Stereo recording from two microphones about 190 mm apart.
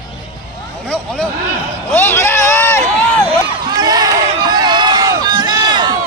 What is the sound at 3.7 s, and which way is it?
Crowd, 20° right (ahead or behind).